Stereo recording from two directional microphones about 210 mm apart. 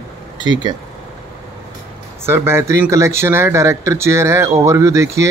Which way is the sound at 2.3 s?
10° right (ahead or behind).